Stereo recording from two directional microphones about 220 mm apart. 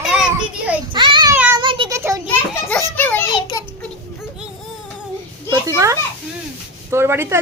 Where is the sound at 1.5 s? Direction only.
25° right (ahead or behind).